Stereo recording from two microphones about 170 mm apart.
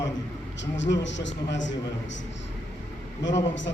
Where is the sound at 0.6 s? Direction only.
90° left.